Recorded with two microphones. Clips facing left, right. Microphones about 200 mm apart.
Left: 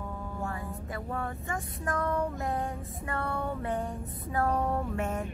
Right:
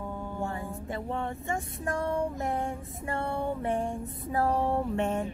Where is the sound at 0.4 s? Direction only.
25° right (ahead or behind).